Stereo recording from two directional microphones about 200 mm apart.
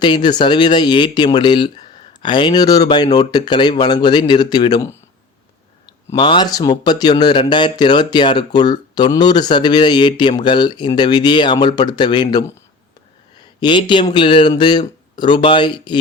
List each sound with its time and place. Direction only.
0.0 s speech: 20° left (ahead or behind)
6.1 s speech: 25° left (ahead or behind)
13.6 s speech: 25° left (ahead or behind)